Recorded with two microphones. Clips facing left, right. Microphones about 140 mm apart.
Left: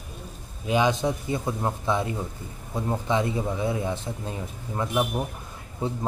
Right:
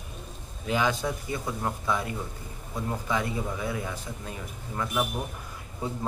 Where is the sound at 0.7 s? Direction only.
20° left (ahead or behind).